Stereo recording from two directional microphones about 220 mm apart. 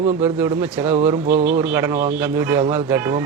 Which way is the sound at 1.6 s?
10° right (ahead or behind).